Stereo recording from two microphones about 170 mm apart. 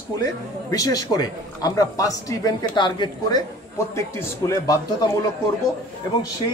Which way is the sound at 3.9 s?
15° left (ahead or behind).